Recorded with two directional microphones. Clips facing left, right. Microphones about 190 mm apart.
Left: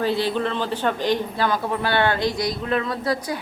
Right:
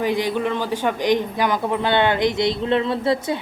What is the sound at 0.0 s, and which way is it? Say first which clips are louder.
Speech: right 1 dB; 15° right (ahead or behind).